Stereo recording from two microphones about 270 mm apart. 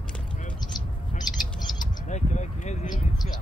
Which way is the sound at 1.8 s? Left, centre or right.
Left.